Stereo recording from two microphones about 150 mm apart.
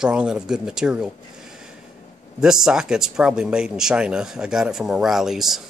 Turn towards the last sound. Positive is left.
turn(degrees=0)  # may be behind; listen again after turning